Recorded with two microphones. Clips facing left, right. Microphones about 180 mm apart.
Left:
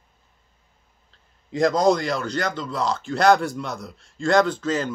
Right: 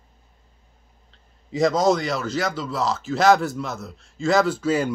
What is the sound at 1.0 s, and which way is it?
A man's voice, centre (ahead or behind).